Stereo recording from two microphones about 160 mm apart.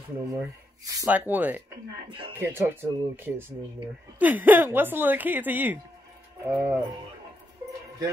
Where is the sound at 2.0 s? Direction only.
30° right (ahead or behind).